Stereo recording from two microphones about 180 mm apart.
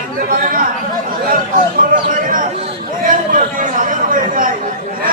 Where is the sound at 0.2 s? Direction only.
50° right (ahead or behind).